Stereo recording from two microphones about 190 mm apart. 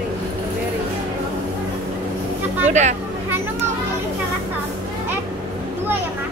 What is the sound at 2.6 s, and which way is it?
Hubbub, 40° right (ahead or behind).